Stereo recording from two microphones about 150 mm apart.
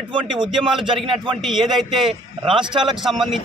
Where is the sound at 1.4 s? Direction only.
Centre (ahead or behind).